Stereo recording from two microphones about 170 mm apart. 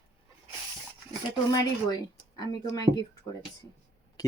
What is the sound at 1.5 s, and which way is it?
A woman's voice, 25° left (ahead or behind).